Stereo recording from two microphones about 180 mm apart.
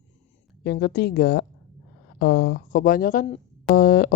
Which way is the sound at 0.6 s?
65° left (ahead or behind).